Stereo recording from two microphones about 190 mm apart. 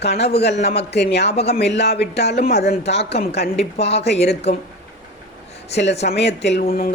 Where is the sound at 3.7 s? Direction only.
35° left (ahead or behind).